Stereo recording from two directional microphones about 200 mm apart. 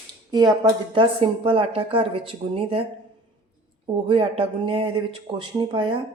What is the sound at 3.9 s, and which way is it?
Speech, 25° right (ahead or behind).